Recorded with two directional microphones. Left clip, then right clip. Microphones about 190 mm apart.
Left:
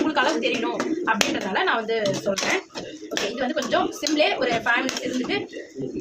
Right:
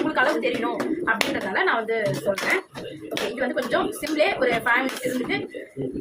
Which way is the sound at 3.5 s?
10° left (ahead or behind).